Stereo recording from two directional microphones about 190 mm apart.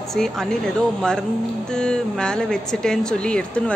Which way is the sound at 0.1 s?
Centre (ahead or behind).